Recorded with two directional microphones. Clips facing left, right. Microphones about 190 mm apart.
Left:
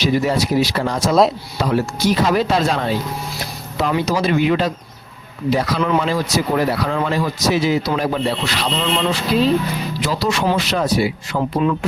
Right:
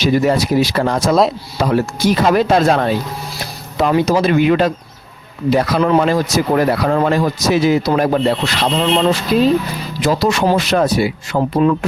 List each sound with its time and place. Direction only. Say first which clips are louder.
0.0 s a man's voice: right 3 dB; 50° right (ahead or behind)